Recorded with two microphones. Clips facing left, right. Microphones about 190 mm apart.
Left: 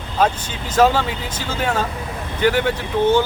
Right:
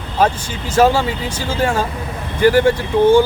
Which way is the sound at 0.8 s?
10° right (ahead or behind).